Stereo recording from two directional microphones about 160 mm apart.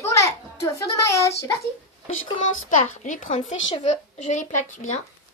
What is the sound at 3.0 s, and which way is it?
Speech, 50° left (ahead or behind).